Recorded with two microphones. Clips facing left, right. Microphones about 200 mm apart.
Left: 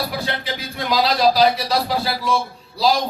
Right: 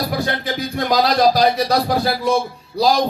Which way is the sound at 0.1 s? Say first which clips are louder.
Right 4 dB; 50° right (ahead or behind).